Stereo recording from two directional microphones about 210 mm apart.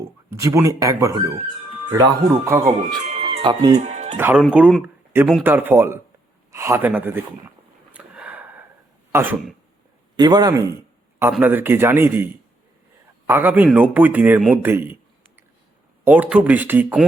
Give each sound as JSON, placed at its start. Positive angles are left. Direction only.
{"t": 0.3, "sound": "a man's voice", "side_deg": -15}
{"t": 3.1, "sound": "music", "side_deg": -30}
{"t": 3.8, "sound": "music", "side_deg": -30}
{"t": 4.2, "sound": "a man's voice", "side_deg": -10}
{"t": 7.9, "sound": "a sound", "side_deg": -5}
{"t": 9.1, "sound": "a man's voice", "side_deg": -10}
{"t": 10.2, "sound": "a man's voice", "side_deg": -20}
{"t": 16.0, "sound": "a man's voice", "side_deg": -10}